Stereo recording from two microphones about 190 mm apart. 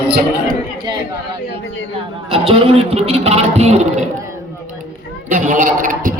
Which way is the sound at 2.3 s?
30° right (ahead or behind).